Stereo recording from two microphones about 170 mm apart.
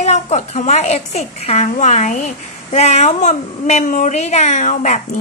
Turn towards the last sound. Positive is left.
turn(degrees=45)  # may be behind; listen again after turning